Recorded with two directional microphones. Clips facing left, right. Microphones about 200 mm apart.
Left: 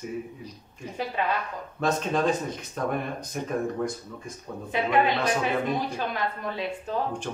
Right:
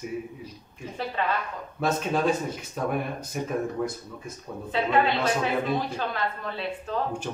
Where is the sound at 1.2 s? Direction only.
10° left (ahead or behind).